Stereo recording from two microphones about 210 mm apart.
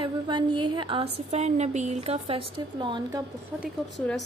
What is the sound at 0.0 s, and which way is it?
A woman's voice, 25° right (ahead or behind).